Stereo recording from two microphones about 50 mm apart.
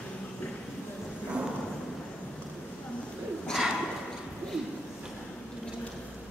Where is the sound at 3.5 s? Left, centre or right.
Centre.